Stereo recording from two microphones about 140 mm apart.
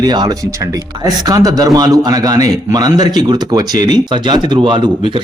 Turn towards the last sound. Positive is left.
turn(degrees=-35)  # may be behind; listen again after turning